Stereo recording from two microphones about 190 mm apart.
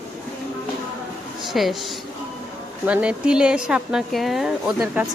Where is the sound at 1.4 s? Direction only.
Centre (ahead or behind).